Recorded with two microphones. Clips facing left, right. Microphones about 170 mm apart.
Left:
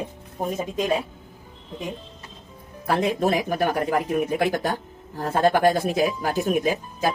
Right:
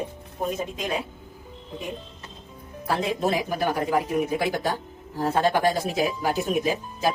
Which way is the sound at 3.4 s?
55° left (ahead or behind).